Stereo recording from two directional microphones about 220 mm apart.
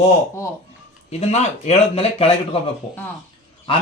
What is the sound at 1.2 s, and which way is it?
A man's voice, 30° left (ahead or behind).